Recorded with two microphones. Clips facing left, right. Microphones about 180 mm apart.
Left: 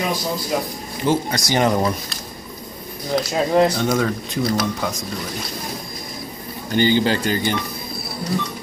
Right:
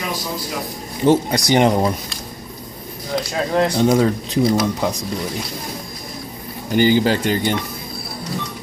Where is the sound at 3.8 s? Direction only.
20° right (ahead or behind).